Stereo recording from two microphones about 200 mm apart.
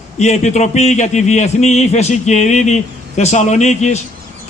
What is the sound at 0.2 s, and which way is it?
A man's voice, 35° left (ahead or behind).